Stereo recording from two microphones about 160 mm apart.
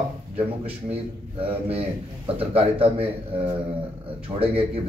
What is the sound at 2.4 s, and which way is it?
Speech, 35° right (ahead or behind).